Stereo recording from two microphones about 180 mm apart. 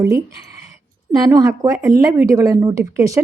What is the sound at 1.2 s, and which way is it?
Speech, 20° right (ahead or behind).